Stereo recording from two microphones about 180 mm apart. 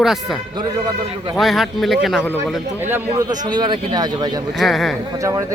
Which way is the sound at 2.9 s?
20° right (ahead or behind).